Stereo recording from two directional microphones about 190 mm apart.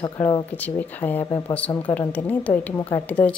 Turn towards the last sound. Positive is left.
turn(degrees=10)  # may be behind; listen again after turning